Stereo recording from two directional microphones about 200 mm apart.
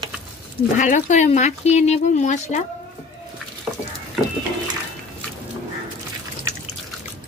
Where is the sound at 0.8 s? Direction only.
40° left (ahead or behind).